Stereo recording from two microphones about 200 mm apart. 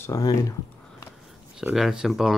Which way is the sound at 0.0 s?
15° left (ahead or behind).